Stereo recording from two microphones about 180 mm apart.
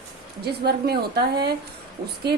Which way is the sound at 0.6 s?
65° right (ahead or behind).